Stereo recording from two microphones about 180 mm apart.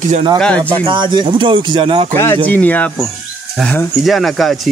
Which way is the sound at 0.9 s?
25° right (ahead or behind).